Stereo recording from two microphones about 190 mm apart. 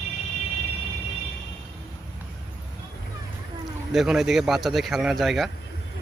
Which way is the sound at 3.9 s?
Centre (ahead or behind).